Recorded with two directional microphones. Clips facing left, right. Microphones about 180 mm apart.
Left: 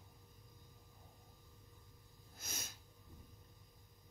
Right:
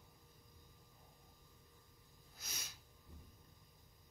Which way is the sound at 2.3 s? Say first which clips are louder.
Left 4 dB; 50° left (ahead or behind).